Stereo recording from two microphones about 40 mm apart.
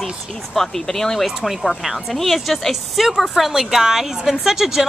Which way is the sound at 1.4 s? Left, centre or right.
Centre.